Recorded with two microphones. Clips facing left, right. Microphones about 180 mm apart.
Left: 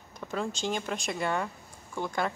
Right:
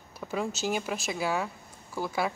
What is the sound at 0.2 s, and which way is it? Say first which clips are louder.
Speech: right 1 dB; 5° right (ahead or behind).